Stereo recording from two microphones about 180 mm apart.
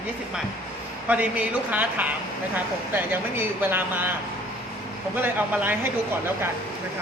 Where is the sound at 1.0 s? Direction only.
10° right (ahead or behind).